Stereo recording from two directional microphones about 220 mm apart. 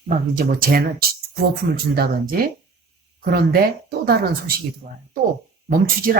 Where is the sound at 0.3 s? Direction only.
40° right (ahead or behind).